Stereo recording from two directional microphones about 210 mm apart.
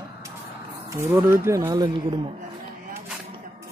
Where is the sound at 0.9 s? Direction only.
10° right (ahead or behind).